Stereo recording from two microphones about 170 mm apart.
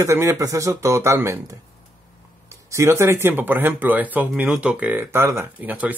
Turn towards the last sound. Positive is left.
turn(degrees=-10)  # may be behind; listen again after turning